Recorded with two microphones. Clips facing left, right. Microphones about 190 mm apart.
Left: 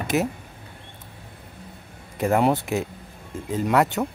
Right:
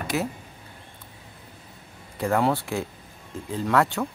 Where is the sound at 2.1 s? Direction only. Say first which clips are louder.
Left 3 dB; 20° left (ahead or behind).